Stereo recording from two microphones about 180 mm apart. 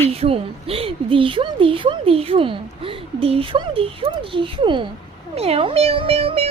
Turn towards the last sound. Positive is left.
turn(degrees=-35)  # may be behind; listen again after turning